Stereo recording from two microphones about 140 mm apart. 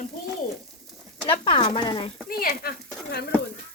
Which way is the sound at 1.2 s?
40° left (ahead or behind).